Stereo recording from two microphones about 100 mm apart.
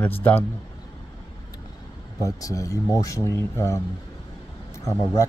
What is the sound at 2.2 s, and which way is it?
Speech, 35° left (ahead or behind).